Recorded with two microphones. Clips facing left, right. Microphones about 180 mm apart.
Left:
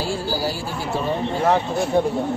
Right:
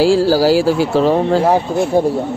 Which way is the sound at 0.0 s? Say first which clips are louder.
Right 13 dB; 90° right.